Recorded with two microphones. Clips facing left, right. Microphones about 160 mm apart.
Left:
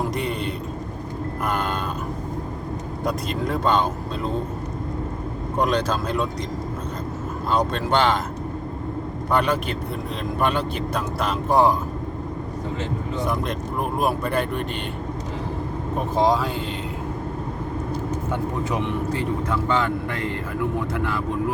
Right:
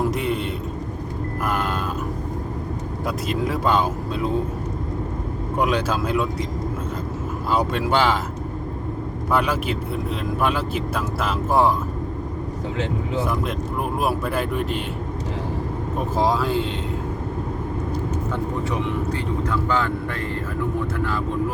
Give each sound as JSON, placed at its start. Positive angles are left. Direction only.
{"t": 0.0, "sound": "a sound", "side_deg": 0}
{"t": 3.1, "sound": "speech", "side_deg": -5}
{"t": 5.5, "sound": "speech", "side_deg": -5}
{"t": 7.5, "sound": "speech", "side_deg": -10}
{"t": 9.3, "sound": "speech", "side_deg": -5}
{"t": 14.0, "sound": "speech", "side_deg": -5}
{"t": 16.1, "sound": "speech", "side_deg": 0}
{"t": 19.5, "sound": "speech", "side_deg": 20}